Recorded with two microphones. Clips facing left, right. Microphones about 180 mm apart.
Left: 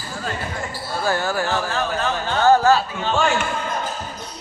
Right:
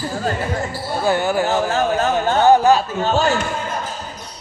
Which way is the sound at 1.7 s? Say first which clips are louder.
Right 5 dB; 40° right (ahead or behind).